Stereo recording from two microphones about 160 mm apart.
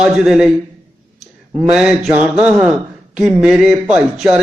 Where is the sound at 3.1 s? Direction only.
5° right (ahead or behind).